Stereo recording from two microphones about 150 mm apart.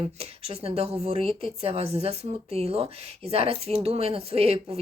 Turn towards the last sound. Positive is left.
turn(degrees=-40)  # may be behind; listen again after turning